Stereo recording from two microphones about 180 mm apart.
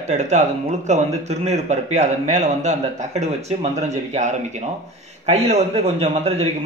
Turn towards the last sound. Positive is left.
turn(degrees=-35)  # may be behind; listen again after turning